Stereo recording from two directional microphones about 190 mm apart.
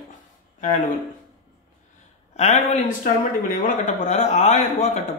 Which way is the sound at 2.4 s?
35° left (ahead or behind).